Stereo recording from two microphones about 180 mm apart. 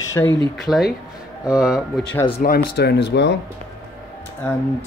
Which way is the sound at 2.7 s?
70° left (ahead or behind).